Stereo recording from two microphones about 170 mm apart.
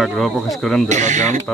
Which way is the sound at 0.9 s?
45° right (ahead or behind).